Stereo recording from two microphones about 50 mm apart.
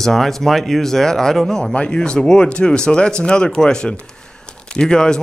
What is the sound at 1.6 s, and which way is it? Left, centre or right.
Speech, centre.